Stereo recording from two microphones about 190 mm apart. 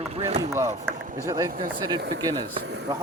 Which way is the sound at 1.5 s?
50° right (ahead or behind).